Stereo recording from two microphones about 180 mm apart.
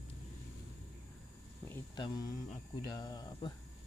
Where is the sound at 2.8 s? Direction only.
20° left (ahead or behind).